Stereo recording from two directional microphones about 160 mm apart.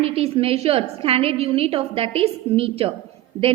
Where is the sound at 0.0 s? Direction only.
40° right (ahead or behind).